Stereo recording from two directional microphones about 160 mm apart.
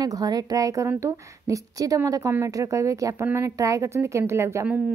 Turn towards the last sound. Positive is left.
turn(degrees=-15)  # may be behind; listen again after turning